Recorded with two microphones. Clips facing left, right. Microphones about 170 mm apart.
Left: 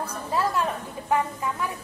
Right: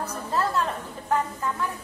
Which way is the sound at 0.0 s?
10° left (ahead or behind).